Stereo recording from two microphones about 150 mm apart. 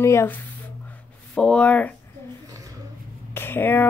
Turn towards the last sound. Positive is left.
turn(degrees=15)  # may be behind; listen again after turning